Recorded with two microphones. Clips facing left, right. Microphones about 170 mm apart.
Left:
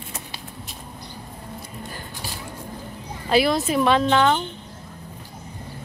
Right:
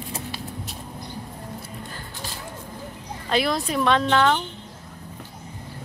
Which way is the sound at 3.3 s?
5° left (ahead or behind).